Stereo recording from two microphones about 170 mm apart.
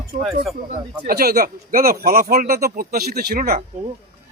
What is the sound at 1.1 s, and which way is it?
Speech, 65° right (ahead or behind).